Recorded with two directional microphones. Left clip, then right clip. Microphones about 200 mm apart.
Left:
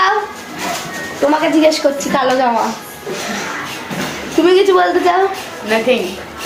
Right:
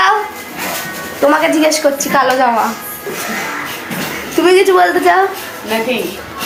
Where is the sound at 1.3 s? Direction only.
Centre (ahead or behind).